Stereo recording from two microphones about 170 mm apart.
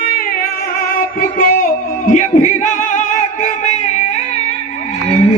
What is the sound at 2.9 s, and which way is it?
Music, 45° left (ahead or behind).